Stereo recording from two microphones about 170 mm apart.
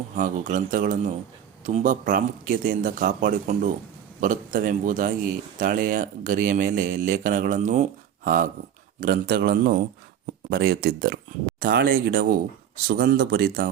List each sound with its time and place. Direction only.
0.2 s speech: 50° right (ahead or behind)